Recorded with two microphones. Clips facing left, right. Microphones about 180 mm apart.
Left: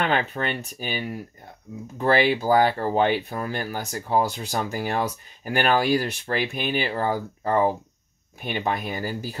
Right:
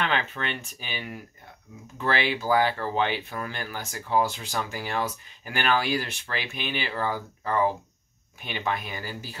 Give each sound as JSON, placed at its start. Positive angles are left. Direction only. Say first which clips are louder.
{"t": 0.0, "sound": "speech", "louder": "left 4 dB", "side_deg": 40}
{"t": 6.5, "sound": "speech", "louder": "left 6 dB", "side_deg": 50}
{"t": 6.9, "sound": "speech", "louder": "left 4 dB", "side_deg": 40}